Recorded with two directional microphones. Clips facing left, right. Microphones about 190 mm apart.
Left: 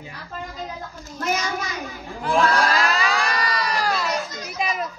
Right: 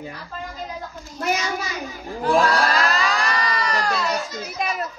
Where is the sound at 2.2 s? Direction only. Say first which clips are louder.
Right 2 dB; 40° right (ahead or behind).